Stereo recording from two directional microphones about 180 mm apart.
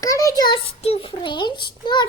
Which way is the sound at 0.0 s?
20° left (ahead or behind).